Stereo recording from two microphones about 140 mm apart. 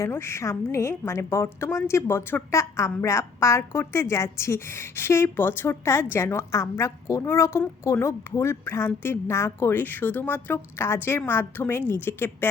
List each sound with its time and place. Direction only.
0.0 s a woman's voice: 20° left (ahead or behind)